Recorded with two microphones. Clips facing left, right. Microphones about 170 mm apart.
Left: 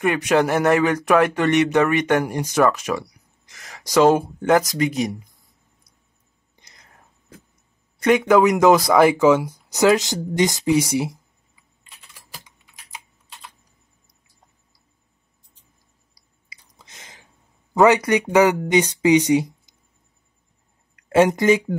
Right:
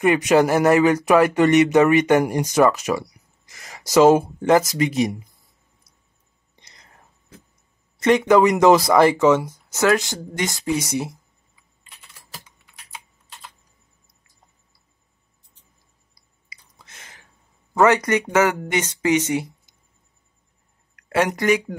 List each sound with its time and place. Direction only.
0.0 s speech: 5° right (ahead or behind)
8.0 s speech: centre (ahead or behind)
9.7 s speech: 15° left (ahead or behind)
16.8 s a sound: 15° left (ahead or behind)
17.7 s speech: 15° left (ahead or behind)
20.9 s speech: 25° left (ahead or behind)